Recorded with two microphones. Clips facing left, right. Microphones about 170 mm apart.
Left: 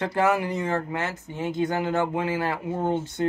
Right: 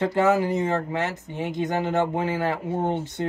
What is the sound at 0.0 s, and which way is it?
Speech, 25° right (ahead or behind).